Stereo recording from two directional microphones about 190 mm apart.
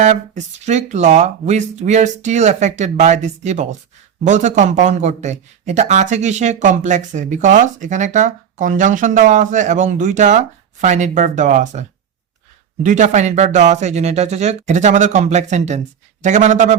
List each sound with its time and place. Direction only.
0.0 s speech: 40° right (ahead or behind)